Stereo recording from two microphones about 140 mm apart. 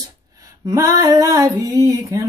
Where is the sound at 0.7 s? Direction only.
25° right (ahead or behind).